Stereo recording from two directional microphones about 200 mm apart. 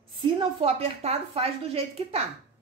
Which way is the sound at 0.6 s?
30° right (ahead or behind).